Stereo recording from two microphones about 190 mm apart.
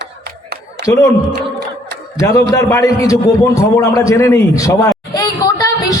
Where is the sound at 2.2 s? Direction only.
15° left (ahead or behind).